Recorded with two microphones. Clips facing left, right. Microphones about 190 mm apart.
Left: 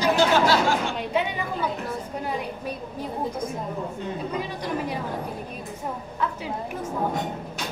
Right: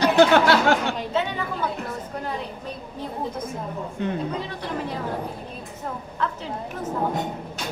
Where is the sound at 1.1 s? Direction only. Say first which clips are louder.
Even; 10° left (ahead or behind).